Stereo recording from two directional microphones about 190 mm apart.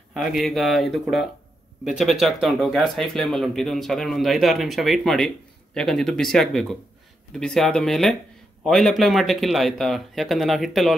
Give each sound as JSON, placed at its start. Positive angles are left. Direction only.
{"t": 0.1, "sound": "speech", "side_deg": 0}